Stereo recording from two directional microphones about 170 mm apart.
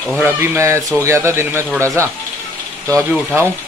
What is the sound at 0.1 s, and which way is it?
Speech, 15° right (ahead or behind).